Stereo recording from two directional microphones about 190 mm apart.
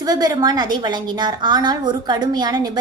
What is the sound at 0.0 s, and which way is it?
A woman's voice, 20° right (ahead or behind).